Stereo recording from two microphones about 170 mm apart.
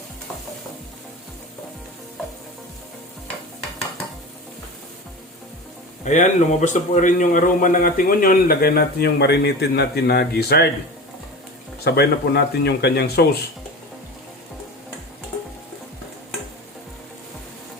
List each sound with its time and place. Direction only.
6.1 s a man's voice: 45° left (ahead or behind); by 10.7 s 70° left (ahead or behind)
11.9 s speech: 75° left (ahead or behind)